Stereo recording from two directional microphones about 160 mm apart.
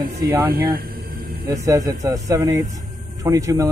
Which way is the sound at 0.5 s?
70° right (ahead or behind).